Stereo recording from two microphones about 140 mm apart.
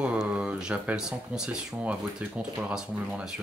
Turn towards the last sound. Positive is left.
turn(degrees=-5)  # may be behind; listen again after turning